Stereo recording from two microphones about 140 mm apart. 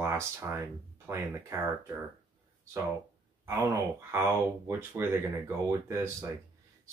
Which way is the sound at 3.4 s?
20° right (ahead or behind).